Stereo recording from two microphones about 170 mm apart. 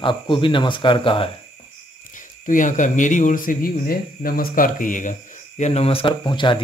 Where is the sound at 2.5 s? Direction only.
50° left (ahead or behind).